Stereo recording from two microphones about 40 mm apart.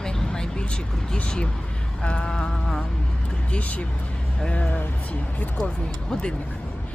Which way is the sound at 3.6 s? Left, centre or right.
Left.